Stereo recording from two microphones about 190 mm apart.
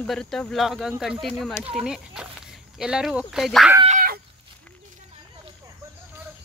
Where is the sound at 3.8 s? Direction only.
50° right (ahead or behind).